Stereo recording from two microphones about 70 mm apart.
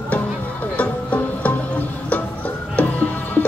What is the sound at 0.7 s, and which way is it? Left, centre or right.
Music, left.